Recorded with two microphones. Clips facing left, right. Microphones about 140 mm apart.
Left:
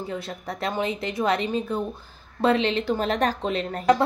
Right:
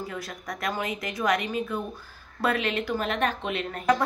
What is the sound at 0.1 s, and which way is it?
Speech, 30° left (ahead or behind).